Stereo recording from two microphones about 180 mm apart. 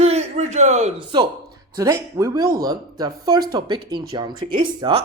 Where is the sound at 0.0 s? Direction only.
35° right (ahead or behind).